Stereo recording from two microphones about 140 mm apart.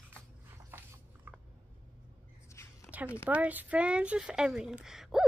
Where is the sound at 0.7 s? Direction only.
15° right (ahead or behind).